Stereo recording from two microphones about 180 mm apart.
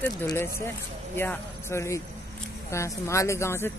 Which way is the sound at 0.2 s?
15° left (ahead or behind).